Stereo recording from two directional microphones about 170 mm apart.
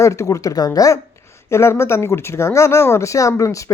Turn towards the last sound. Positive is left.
turn(degrees=20)  # may be behind; listen again after turning